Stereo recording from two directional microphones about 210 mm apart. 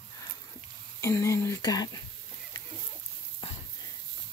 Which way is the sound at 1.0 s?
15° left (ahead or behind).